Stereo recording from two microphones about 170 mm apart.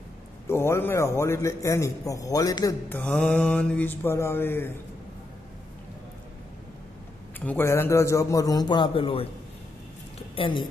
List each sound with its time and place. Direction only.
0.5 s a man's voice: 15° left (ahead or behind)
2.9 s a man's voice: 5° left (ahead or behind)
7.3 s a man's voice: 10° left (ahead or behind); by 9.3 s 35° left (ahead or behind)
10.3 s a man's voice: 30° left (ahead or behind)